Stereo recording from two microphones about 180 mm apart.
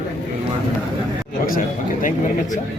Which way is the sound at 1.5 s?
45° left (ahead or behind).